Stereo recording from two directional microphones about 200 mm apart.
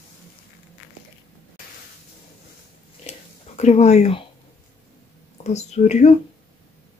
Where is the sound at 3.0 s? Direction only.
35° left (ahead or behind).